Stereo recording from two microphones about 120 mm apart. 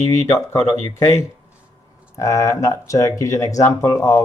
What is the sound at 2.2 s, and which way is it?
Speech, 25° left (ahead or behind).